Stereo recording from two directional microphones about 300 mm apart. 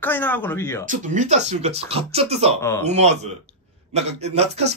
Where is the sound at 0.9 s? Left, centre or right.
Right.